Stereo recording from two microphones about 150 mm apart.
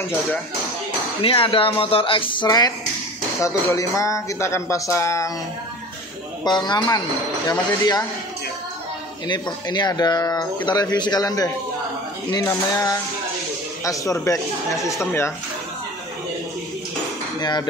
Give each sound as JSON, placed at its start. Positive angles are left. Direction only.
{"t": 1.2, "sound": "speech", "side_deg": 35}
{"t": 6.4, "sound": "speech", "side_deg": 30}
{"t": 9.3, "sound": "speech", "side_deg": 30}
{"t": 17.4, "sound": "hammer", "side_deg": 25}